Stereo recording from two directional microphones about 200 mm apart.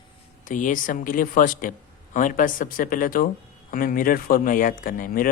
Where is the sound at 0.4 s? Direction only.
40° left (ahead or behind).